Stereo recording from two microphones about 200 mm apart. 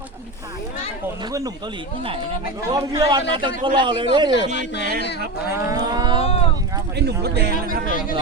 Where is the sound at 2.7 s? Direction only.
20° right (ahead or behind).